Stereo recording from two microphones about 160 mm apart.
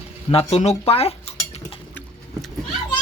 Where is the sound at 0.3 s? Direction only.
40° left (ahead or behind).